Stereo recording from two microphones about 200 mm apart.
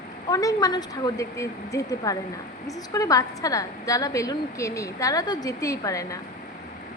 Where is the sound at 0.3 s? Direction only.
20° left (ahead or behind).